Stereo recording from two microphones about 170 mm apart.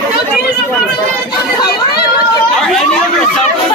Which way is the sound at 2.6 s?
5° left (ahead or behind).